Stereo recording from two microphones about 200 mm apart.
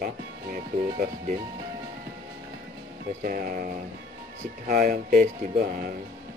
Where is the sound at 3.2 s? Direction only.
45° right (ahead or behind).